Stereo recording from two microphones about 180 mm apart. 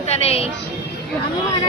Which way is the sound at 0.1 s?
35° left (ahead or behind).